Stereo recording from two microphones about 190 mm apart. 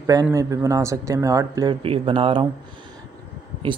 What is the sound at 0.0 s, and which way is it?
Speech, 15° right (ahead or behind).